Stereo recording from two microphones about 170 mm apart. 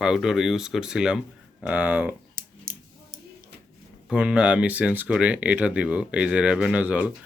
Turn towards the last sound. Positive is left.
turn(degrees=-10)  # may be behind; listen again after turning